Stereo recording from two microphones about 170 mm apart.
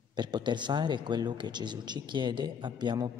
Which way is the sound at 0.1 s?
25° right (ahead or behind).